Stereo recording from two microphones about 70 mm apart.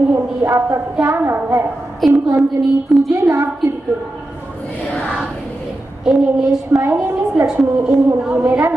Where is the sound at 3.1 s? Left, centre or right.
Right.